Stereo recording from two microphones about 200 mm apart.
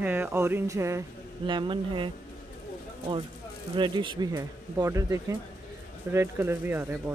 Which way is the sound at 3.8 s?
25° right (ahead or behind).